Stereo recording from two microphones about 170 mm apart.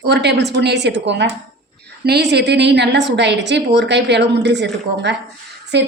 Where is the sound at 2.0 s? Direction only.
75° right (ahead or behind).